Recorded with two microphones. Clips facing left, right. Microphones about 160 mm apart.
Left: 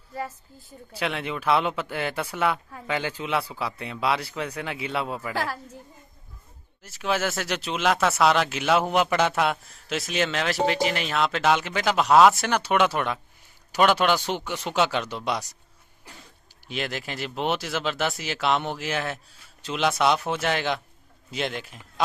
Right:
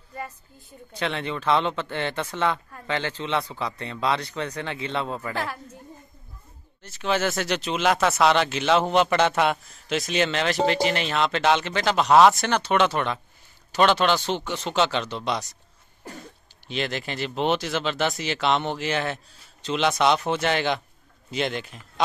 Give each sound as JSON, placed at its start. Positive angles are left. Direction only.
{"t": 0.7, "sound": "speech", "side_deg": 5}
{"t": 6.8, "sound": "speech", "side_deg": 5}
{"t": 16.0, "sound": "cough", "side_deg": -45}
{"t": 16.6, "sound": "speech", "side_deg": 5}